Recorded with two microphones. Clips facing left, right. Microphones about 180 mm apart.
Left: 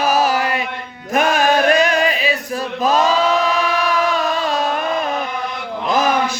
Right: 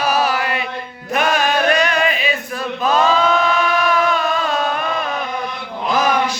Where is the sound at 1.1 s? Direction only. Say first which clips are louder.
Left 2 dB; 45° left (ahead or behind).